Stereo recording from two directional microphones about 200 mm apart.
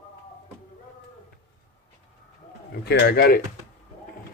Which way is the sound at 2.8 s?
55° left (ahead or behind).